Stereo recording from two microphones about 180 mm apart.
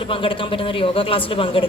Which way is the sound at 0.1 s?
30° left (ahead or behind).